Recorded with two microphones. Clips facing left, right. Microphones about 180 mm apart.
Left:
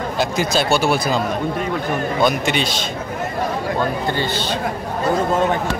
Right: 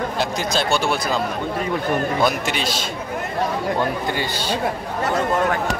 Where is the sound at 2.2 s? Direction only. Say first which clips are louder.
Left 3 dB; centre (ahead or behind).